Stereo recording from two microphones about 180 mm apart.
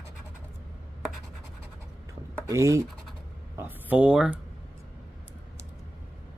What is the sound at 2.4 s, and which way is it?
Speech, 15° right (ahead or behind).